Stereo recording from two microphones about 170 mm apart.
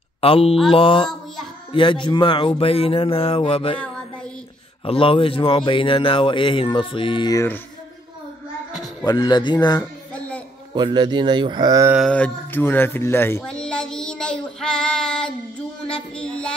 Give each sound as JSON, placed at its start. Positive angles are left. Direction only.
{"t": 0.2, "sound": "speech", "side_deg": 35}
{"t": 4.8, "sound": "speech", "side_deg": 30}
{"t": 9.0, "sound": "speech", "side_deg": 25}
{"t": 10.1, "sound": "a sound", "side_deg": 10}
{"t": 10.7, "sound": "speech", "side_deg": -25}
{"t": 12.1, "sound": "speech", "side_deg": 10}
{"t": 15.9, "sound": "child singing", "side_deg": 5}